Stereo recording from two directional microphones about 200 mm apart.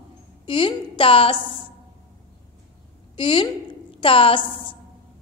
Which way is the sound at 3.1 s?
25° left (ahead or behind).